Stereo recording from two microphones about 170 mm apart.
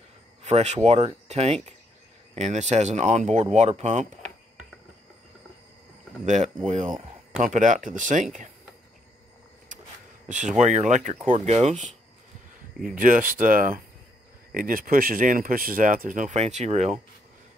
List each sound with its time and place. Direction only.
0.4 s speech: 40° right (ahead or behind)
6.2 s speech: 45° right (ahead or behind)
10.2 s speech: 45° right (ahead or behind)
12.9 s speech: 50° right (ahead or behind)